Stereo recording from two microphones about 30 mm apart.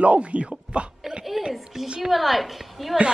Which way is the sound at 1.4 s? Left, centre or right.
Right.